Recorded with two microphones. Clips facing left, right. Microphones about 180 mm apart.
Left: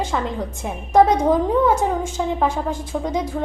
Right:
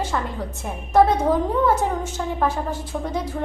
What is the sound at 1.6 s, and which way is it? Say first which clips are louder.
A woman's voice: left 2 dB; 10° left (ahead or behind).